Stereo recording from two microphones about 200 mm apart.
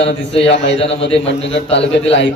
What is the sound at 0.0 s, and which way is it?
A man's voice, 30° left (ahead or behind).